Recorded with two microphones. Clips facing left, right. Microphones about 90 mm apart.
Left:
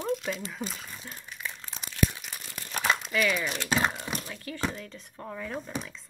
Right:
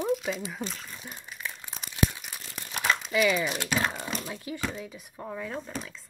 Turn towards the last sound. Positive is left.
turn(degrees=0)  # may be behind; listen again after turning